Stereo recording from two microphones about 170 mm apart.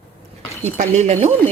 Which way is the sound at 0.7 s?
40° right (ahead or behind).